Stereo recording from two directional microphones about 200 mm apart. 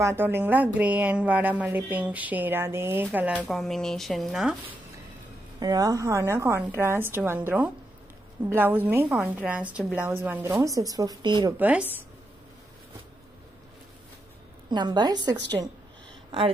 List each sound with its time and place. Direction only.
0.0 s speech: 10° right (ahead or behind)
5.6 s speech: 20° right (ahead or behind)
11.5 s speech: 10° right (ahead or behind)
14.7 s speech: 20° right (ahead or behind)